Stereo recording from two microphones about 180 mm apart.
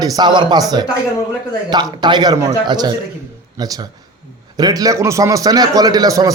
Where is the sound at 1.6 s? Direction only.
25° right (ahead or behind).